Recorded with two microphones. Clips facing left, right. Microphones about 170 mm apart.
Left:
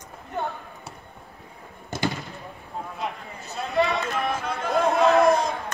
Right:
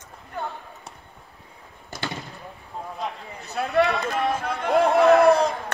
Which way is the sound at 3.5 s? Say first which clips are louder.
Right 2 dB; 65° right (ahead or behind).